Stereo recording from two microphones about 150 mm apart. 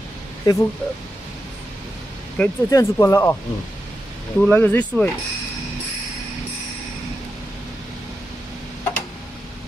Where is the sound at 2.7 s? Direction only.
20° left (ahead or behind).